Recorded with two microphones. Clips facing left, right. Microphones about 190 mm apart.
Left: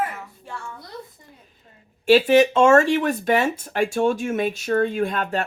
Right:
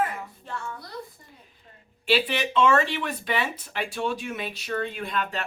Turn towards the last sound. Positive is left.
turn(degrees=50)  # may be behind; listen again after turning